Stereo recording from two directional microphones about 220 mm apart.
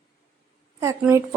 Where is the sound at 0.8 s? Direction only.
10° right (ahead or behind).